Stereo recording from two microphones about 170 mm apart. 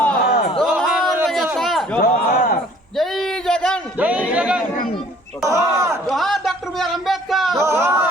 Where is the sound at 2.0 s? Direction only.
60° left (ahead or behind).